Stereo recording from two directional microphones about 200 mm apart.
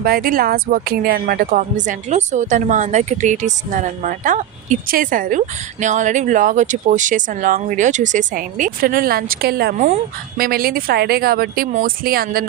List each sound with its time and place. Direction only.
0.0 s speech: 45° right (ahead or behind)
9.7 s speech: 35° right (ahead or behind)